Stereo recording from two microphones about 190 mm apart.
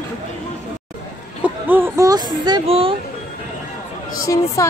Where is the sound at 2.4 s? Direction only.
30° right (ahead or behind).